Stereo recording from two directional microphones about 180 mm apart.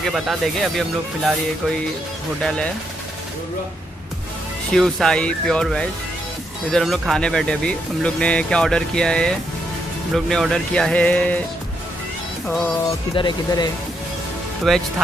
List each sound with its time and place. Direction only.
0.1 s speech: centre (ahead or behind)
4.7 s speech: centre (ahead or behind)
12.4 s speech: 5° left (ahead or behind)
13.1 s speech: 25° left (ahead or behind)
14.7 s speech: centre (ahead or behind)